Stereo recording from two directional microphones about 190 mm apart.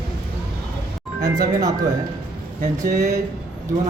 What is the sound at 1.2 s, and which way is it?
Speech, 20° right (ahead or behind).